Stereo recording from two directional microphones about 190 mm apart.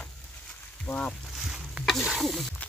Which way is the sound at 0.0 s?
5° left (ahead or behind).